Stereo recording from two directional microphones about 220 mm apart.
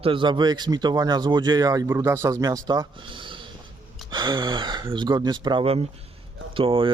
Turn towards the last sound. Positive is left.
turn(degrees=-25)  # may be behind; listen again after turning